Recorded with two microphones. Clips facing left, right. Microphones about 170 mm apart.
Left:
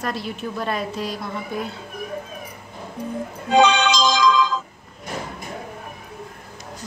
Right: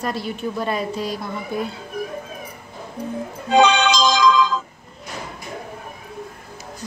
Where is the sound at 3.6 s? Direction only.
60° right (ahead or behind).